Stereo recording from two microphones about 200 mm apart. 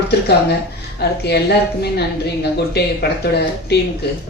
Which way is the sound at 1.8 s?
55° left (ahead or behind).